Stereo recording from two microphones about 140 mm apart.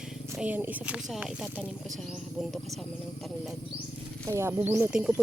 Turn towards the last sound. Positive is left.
turn(degrees=-15)  # may be behind; listen again after turning